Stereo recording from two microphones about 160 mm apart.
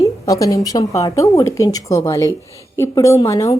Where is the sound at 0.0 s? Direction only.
20° left (ahead or behind).